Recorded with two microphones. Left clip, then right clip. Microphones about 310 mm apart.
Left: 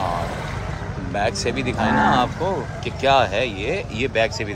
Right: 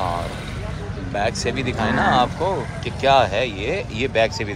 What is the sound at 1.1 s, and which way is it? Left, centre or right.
Speech, centre.